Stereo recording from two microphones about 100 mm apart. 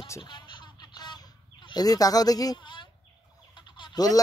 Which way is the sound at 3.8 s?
50° left (ahead or behind).